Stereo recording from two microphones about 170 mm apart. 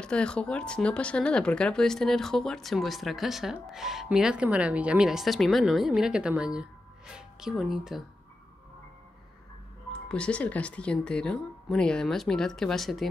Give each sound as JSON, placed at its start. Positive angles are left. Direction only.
{"t": 0.0, "sound": "speech", "side_deg": 5}
{"t": 10.0, "sound": "speech", "side_deg": 5}